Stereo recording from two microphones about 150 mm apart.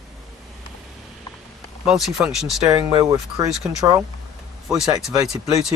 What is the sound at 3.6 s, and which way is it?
Speech, 10° right (ahead or behind).